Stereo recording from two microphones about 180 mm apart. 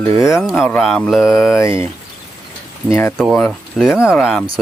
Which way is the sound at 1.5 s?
15° left (ahead or behind).